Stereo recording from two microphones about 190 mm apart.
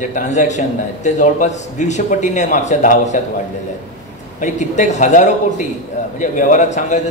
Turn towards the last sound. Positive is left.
turn(degrees=40)  # may be behind; listen again after turning